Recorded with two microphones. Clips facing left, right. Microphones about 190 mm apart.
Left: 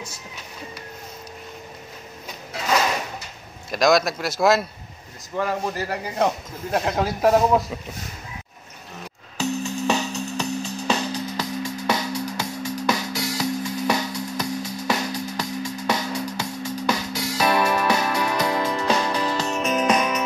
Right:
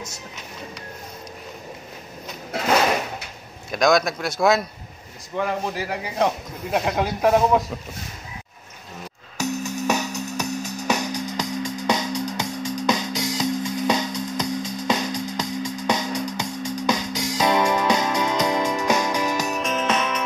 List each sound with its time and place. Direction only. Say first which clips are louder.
3.7 s speech: even; centre (ahead or behind)
9.5 s music: even; 40° right (ahead or behind)
10.9 s music: right 1 dB; 15° right (ahead or behind)
19.6 s music: left 6 dB; 10° left (ahead or behind)